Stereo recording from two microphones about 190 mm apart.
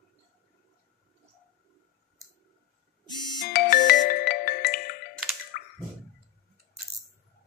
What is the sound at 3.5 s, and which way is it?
Music, 45° left (ahead or behind).